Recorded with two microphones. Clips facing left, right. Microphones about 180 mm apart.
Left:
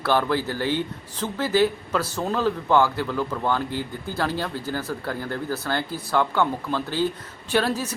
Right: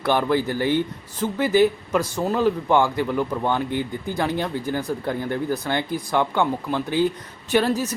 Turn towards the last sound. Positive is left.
turn(degrees=-10)  # may be behind; listen again after turning